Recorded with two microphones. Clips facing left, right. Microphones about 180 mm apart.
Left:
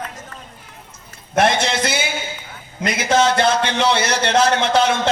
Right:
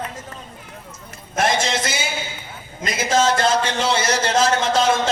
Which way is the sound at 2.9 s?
65° left (ahead or behind).